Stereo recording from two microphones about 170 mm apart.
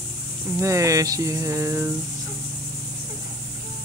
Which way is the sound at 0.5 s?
20° right (ahead or behind).